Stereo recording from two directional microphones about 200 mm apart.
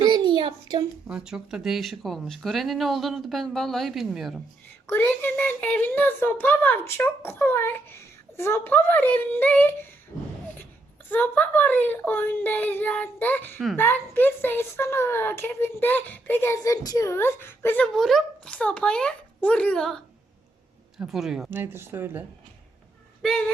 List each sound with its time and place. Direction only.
0.0 s a sound: 25° right (ahead or behind)
1.0 s speech: 5° right (ahead or behind)
4.9 s speech: 10° left (ahead or behind)
11.1 s speech: 10° left (ahead or behind)
17.9 s speech: centre (ahead or behind)
21.0 s speech: centre (ahead or behind)
23.2 s speech: centre (ahead or behind)